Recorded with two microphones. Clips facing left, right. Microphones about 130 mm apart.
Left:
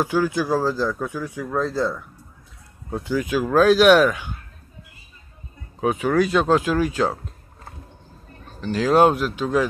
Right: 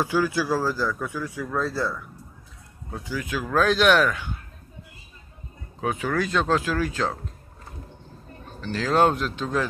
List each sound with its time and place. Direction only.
0.0 s speech: 15° left (ahead or behind)
2.9 s speech: 60° left (ahead or behind)
3.3 s speech: 15° left (ahead or behind)
5.8 s speech: 15° left (ahead or behind)
8.5 s speech: 15° left (ahead or behind)